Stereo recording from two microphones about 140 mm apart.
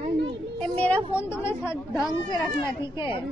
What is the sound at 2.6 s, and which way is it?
Speech, 35° left (ahead or behind).